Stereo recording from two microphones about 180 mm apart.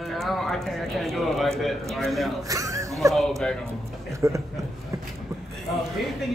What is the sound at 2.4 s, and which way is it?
Chuckle, 20° right (ahead or behind).